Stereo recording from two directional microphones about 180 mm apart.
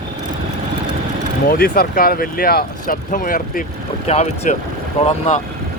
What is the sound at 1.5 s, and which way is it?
Speech, 55° left (ahead or behind).